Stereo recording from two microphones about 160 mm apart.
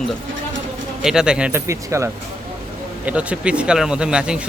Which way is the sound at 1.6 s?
15° right (ahead or behind).